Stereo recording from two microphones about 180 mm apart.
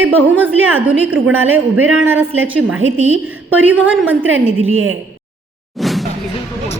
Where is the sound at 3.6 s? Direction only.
10° right (ahead or behind).